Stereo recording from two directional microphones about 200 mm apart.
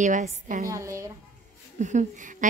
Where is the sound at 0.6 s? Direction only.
15° right (ahead or behind).